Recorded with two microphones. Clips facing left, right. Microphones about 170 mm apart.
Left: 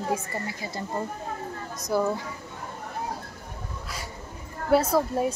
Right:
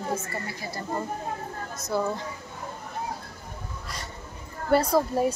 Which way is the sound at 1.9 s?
10° left (ahead or behind).